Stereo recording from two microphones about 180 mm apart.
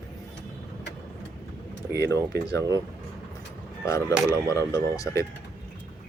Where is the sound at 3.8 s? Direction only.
15° left (ahead or behind).